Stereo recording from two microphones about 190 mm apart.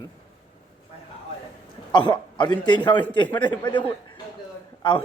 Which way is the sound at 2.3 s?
25° left (ahead or behind).